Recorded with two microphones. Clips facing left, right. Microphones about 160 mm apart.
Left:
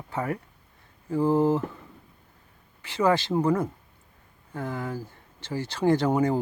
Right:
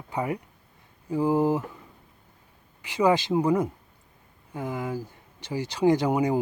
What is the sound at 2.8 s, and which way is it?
Speech, 15° right (ahead or behind).